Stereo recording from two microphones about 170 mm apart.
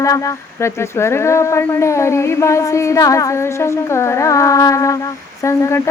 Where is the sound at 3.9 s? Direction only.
15° left (ahead or behind).